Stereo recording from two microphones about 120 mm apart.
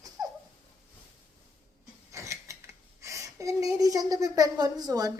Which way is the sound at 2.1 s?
25° right (ahead or behind).